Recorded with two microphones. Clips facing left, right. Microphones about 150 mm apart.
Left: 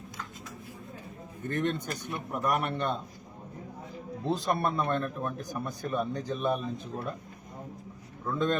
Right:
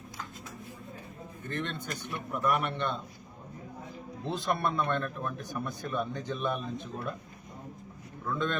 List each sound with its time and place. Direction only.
1.5 s a man's voice: 45° left (ahead or behind)
4.3 s speech: 40° left (ahead or behind)
8.3 s speech: 35° left (ahead or behind)